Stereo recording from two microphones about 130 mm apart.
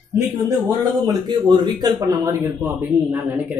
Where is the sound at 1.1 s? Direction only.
35° right (ahead or behind); by 3.4 s 15° right (ahead or behind).